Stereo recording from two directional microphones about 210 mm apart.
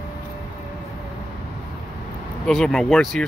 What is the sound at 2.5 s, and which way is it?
Speech, centre (ahead or behind).